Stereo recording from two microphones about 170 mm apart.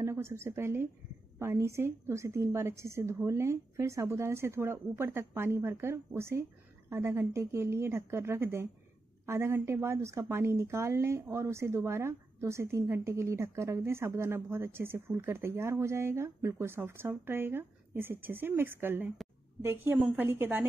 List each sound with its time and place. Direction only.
0.0 s a woman's voice: 15° right (ahead or behind)